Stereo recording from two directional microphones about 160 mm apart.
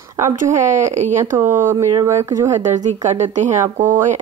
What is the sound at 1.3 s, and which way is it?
Speech, 15° right (ahead or behind).